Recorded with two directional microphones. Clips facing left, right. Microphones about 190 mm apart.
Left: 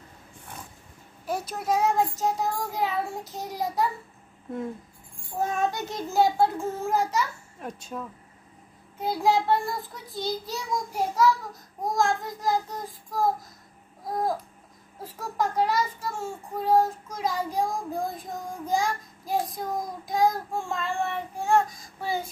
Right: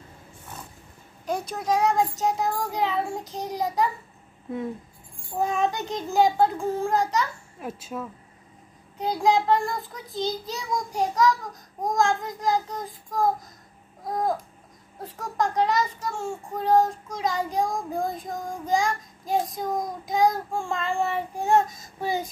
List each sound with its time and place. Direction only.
1.2 s child singing: 5° left (ahead or behind)
5.4 s child singing: 5° left (ahead or behind)
9.2 s child singing: 5° left (ahead or behind)
10.1 s child singing: 20° right (ahead or behind)
10.5 s child singing: centre (ahead or behind)
21.4 s child singing: 20° right (ahead or behind)